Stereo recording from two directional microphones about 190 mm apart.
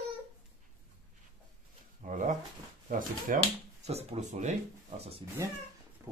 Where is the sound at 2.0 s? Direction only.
40° right (ahead or behind).